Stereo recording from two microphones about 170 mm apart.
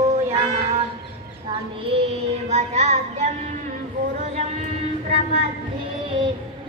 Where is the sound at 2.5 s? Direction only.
40° right (ahead or behind).